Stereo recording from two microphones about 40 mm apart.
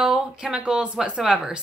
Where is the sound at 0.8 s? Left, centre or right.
Right.